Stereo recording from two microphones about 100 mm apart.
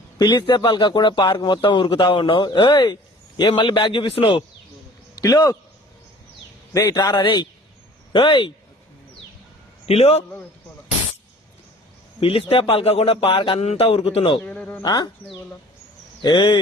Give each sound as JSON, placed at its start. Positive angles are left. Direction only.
{"t": 0.2, "sound": "a man's voice", "side_deg": 45}
{"t": 4.1, "sound": "speech", "side_deg": 65}
{"t": 5.1, "sound": "a man's voice", "side_deg": 40}
{"t": 6.7, "sound": "speech", "side_deg": 40}
{"t": 9.8, "sound": "a man's voice", "side_deg": 90}
{"t": 12.2, "sound": "speech", "side_deg": 75}
{"t": 14.4, "sound": "a man's voice", "side_deg": 10}
{"t": 14.8, "sound": "speech", "side_deg": 40}
{"t": 16.2, "sound": "speech", "side_deg": 50}